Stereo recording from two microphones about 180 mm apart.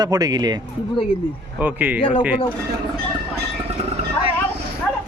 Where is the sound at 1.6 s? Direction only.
10° right (ahead or behind).